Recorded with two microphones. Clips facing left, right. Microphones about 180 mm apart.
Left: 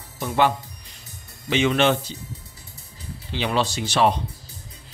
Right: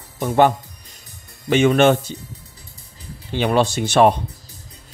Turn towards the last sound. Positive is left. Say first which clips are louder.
# right 6 dB
turn(degrees=-50)  # may be behind; listen again after turning